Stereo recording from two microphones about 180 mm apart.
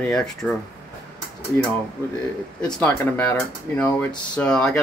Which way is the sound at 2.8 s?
10° left (ahead or behind).